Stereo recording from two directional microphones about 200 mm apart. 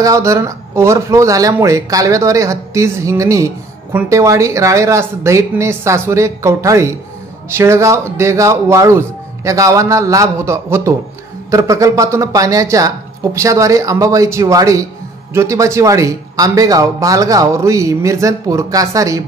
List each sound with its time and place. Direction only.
0.0 s speech: 15° right (ahead or behind)